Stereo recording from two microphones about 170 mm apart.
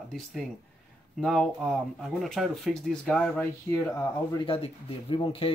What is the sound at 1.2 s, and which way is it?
Speech, centre (ahead or behind).